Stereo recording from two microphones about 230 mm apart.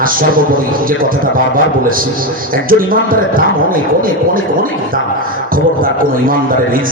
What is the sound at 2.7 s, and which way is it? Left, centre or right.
Speech, right.